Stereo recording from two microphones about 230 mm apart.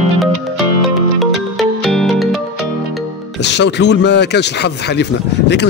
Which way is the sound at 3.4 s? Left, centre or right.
Left.